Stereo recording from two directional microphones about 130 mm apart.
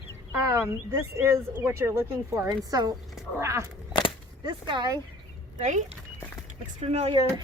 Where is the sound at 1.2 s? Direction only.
20° right (ahead or behind).